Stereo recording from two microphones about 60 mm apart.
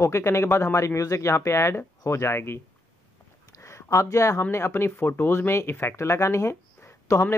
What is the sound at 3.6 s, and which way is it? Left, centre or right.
Speech, left.